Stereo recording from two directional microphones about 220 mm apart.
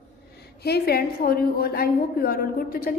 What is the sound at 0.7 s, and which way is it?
A woman's voice, 45° left (ahead or behind).